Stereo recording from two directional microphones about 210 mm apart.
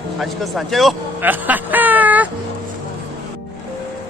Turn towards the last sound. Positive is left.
turn(degrees=-10)  # may be behind; listen again after turning